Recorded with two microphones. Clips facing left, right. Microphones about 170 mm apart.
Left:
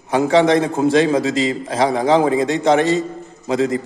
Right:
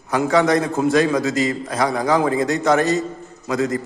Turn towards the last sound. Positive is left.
turn(degrees=25)  # may be behind; listen again after turning